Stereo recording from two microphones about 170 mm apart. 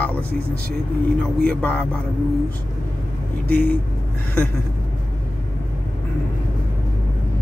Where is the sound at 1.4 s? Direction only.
5° left (ahead or behind).